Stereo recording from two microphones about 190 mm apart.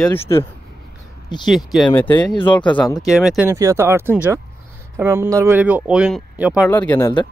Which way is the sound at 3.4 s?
15° right (ahead or behind).